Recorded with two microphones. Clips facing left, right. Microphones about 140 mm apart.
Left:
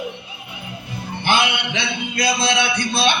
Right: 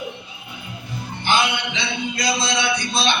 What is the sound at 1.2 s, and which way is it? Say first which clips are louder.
Music: left 1 dB; 55° left (ahead or behind).